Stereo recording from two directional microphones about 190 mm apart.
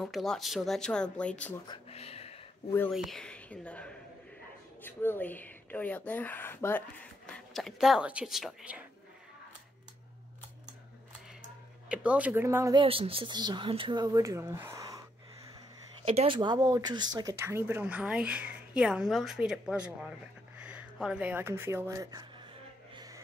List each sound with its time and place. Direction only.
0.0 s speech: centre (ahead or behind)
1.7 s a sound: 30° left (ahead or behind)
2.9 s speech: centre (ahead or behind)
11.9 s speech: 5° right (ahead or behind)
12.7 s speech: 30° right (ahead or behind)
16.2 s speech: 25° right (ahead or behind)
22.9 s music: 20° right (ahead or behind)